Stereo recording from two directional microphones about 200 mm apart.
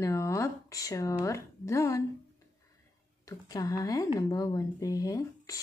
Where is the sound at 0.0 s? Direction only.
15° left (ahead or behind).